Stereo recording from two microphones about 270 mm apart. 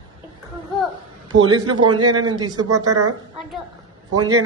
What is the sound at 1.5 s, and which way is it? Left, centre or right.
Speech, centre.